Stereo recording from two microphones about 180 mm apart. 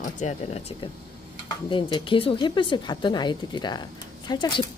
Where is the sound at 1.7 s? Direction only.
25° left (ahead or behind).